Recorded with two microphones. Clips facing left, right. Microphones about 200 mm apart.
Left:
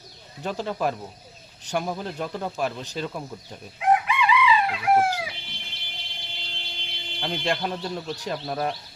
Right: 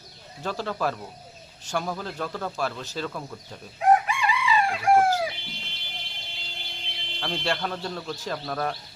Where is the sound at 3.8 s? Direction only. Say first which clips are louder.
Right 1 dB; 45° right (ahead or behind).